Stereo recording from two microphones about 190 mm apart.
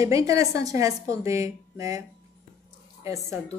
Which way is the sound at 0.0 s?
15° right (ahead or behind).